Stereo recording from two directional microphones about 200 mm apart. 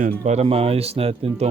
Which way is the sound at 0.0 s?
40° right (ahead or behind).